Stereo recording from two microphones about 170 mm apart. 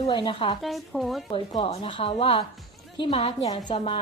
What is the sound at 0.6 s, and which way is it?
Speech, centre (ahead or behind).